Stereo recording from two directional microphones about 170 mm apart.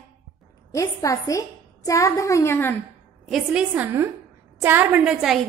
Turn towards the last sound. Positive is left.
turn(degrees=-5)  # may be behind; listen again after turning